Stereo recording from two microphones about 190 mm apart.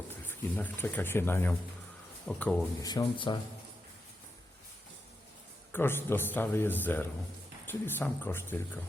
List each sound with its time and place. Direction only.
0.3 s speech: 10° left (ahead or behind)
2.8 s speech: 20° left (ahead or behind)
5.7 s speech: 10° left (ahead or behind)